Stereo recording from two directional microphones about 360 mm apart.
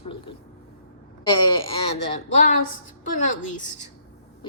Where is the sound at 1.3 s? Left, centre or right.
Centre.